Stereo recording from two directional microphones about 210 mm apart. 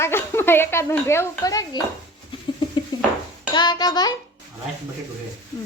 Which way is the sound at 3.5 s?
20° left (ahead or behind).